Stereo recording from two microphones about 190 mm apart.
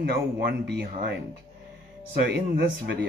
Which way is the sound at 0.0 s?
55° right (ahead or behind).